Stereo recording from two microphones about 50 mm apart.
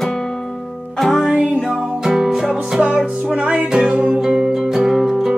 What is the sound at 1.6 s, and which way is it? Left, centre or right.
Music, centre.